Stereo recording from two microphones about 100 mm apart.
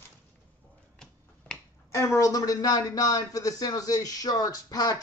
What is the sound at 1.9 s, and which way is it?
Speech, 35° left (ahead or behind).